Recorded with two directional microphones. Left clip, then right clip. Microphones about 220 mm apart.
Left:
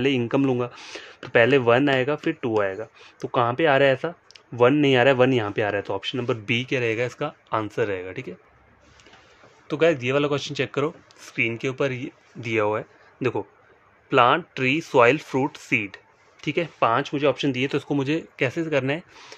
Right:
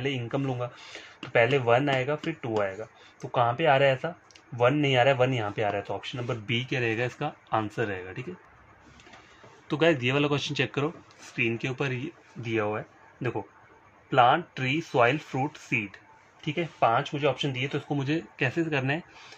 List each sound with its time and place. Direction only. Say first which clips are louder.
0.0 s speech: left 9 dB; 55° left (ahead or behind); by 8.3 s 35° left (ahead or behind)
9.7 s speech: left 3 dB; 20° left (ahead or behind)
11.1 s speech: left 3 dB; 30° left (ahead or behind)